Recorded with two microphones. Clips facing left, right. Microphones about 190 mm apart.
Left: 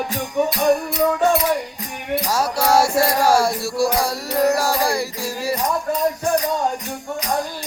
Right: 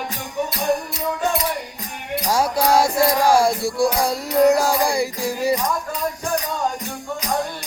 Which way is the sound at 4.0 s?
15° right (ahead or behind).